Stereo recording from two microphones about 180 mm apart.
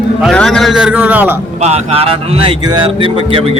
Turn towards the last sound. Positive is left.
turn(degrees=-30)  # may be behind; listen again after turning